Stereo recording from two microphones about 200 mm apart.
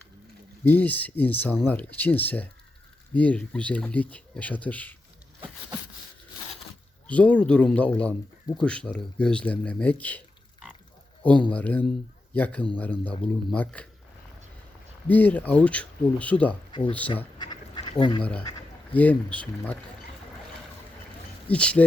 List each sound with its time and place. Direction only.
0.6 s speech: 10° left (ahead or behind)
7.1 s speech: 5° left (ahead or behind)
15.0 s speech: 10° left (ahead or behind)
17.3 s duck: 20° left (ahead or behind)
18.2 s speech: 5° left (ahead or behind)
21.5 s speech: 5° left (ahead or behind)